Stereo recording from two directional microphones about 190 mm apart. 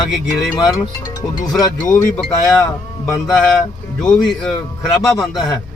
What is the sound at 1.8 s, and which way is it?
Speech, 15° left (ahead or behind).